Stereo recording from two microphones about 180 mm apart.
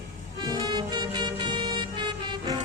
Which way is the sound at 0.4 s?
20° right (ahead or behind).